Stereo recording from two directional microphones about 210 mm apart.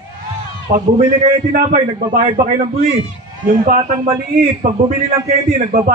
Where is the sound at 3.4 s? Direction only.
40° right (ahead or behind).